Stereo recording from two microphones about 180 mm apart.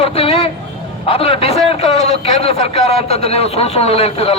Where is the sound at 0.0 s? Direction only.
30° left (ahead or behind).